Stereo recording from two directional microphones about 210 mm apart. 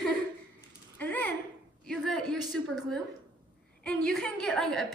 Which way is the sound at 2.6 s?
5° left (ahead or behind).